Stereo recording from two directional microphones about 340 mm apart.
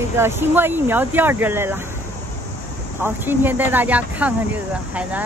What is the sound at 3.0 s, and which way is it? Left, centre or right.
Speech, centre.